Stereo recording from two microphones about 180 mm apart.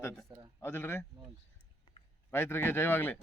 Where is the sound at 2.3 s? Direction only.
10° left (ahead or behind).